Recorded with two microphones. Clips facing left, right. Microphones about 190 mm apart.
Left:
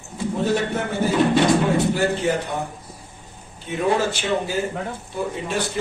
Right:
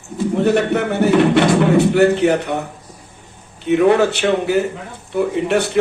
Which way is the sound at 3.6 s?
65° right (ahead or behind).